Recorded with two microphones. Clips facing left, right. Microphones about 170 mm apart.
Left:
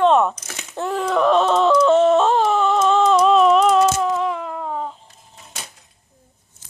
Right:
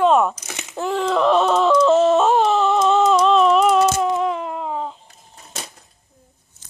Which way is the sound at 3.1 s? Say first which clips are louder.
Left 1 dB; centre (ahead or behind).